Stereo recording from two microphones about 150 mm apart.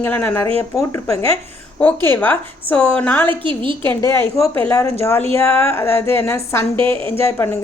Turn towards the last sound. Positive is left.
turn(degrees=15)  # may be behind; listen again after turning